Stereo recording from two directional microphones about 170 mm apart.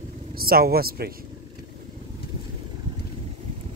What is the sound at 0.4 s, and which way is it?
Speech, 60° right (ahead or behind).